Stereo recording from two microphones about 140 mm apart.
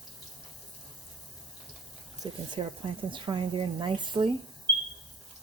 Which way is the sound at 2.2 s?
30° right (ahead or behind).